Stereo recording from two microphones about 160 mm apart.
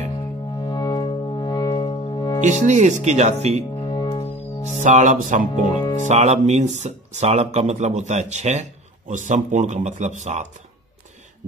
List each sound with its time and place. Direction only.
0.6 s music: 25° left (ahead or behind)
2.4 s speech: 50° right (ahead or behind)
3.7 s music: 30° left (ahead or behind)
4.8 s speech: 50° right (ahead or behind)